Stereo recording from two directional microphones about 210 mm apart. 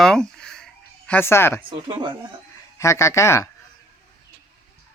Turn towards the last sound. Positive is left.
turn(degrees=15)  # may be behind; listen again after turning